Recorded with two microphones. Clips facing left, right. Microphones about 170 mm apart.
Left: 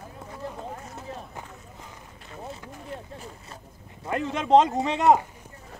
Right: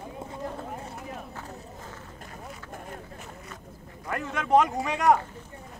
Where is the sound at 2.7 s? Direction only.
50° right (ahead or behind).